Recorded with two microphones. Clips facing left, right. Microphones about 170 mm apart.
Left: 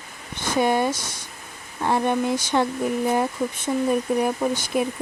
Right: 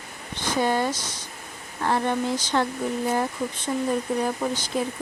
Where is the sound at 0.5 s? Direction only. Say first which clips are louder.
Left 3 dB; 15° left (ahead or behind).